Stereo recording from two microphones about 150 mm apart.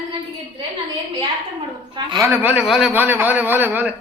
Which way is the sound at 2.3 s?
10° right (ahead or behind).